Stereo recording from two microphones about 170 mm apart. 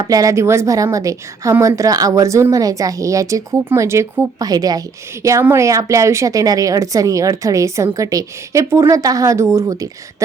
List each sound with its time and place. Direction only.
0.0 s a woman's voice: 20° right (ahead or behind)